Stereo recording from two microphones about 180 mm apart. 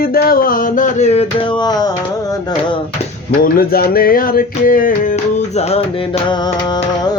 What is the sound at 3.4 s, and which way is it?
Music, 55° left (ahead or behind).